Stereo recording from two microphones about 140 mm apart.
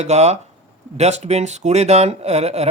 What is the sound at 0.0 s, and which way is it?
Speech, 50° right (ahead or behind).